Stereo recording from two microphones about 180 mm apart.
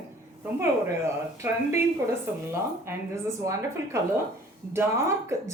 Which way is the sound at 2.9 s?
15° right (ahead or behind).